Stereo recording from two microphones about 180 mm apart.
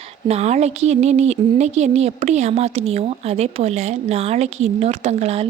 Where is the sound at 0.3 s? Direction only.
35° right (ahead or behind).